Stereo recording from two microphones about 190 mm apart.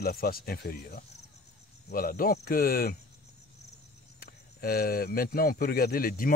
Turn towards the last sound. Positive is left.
turn(degrees=50)  # may be behind; listen again after turning